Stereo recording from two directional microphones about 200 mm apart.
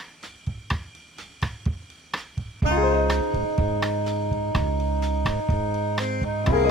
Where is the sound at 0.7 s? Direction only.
Centre (ahead or behind).